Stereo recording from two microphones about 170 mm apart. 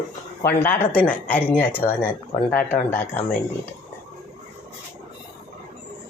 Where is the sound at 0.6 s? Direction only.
10° left (ahead or behind).